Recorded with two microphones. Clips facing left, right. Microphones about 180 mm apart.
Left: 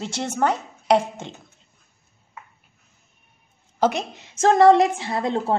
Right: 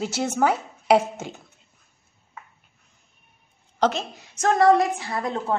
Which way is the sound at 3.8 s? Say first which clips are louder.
Left 1 dB; 15° left (ahead or behind).